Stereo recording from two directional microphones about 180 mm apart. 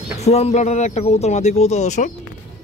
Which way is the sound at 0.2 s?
35° left (ahead or behind).